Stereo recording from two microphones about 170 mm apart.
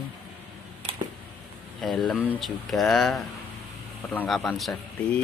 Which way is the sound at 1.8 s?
Centre (ahead or behind).